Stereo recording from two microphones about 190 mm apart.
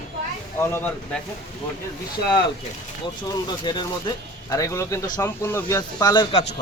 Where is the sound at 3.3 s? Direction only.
20° left (ahead or behind).